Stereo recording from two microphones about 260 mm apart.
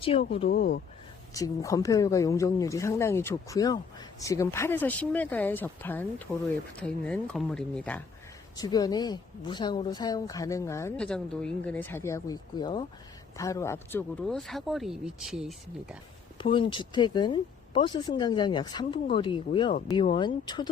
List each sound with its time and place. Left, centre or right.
0.0 s speech: left
0.5 s speech: left
1.3 s speech: centre
16.4 s speech: centre